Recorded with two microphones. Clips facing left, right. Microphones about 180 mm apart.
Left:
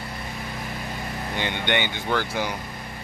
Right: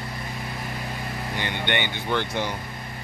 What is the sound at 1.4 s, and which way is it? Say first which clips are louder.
Speech: left 2 dB; 15° left (ahead or behind).